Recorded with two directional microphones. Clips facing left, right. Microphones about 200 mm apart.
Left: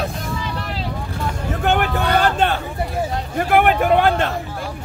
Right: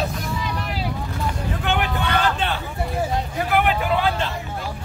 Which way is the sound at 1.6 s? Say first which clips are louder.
Left 6 dB; 45° left (ahead or behind).